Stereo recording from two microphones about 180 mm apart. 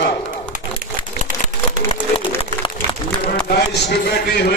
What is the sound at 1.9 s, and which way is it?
Sewing machine, 30° left (ahead or behind).